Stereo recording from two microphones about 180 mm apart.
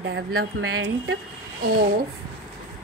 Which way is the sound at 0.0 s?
65° right (ahead or behind).